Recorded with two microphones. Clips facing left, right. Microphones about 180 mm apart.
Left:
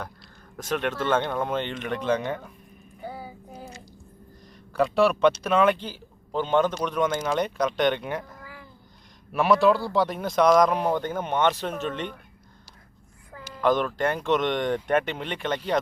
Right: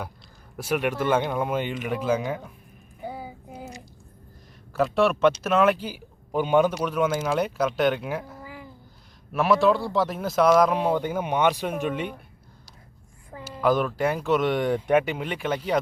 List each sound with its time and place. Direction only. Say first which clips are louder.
0.5 s speech: right 2 dB; 10° right (ahead or behind)
3.0 s child singing: right 2 dB; 15° right (ahead or behind)
4.7 s speech: even; centre (ahead or behind)
8.4 s a sound: right 4 dB; 15° right (ahead or behind)
9.3 s speech: even; centre (ahead or behind)
13.6 s speech: right 1 dB; 10° right (ahead or behind)